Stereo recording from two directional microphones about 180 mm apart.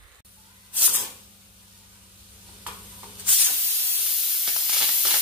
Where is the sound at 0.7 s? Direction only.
10° right (ahead or behind).